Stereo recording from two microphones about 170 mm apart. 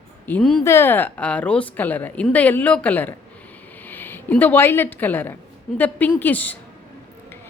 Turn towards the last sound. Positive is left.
turn(degrees=10)  # may be behind; listen again after turning